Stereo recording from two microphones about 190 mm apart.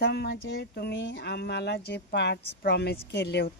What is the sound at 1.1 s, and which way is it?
A woman's voice, 55° left (ahead or behind).